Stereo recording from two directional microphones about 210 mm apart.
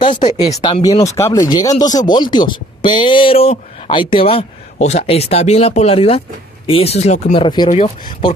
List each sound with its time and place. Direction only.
0.2 s speech: 20° left (ahead or behind)
1.0 s speech: 15° left (ahead or behind)